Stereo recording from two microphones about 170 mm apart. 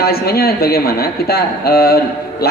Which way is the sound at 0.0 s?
65° left (ahead or behind).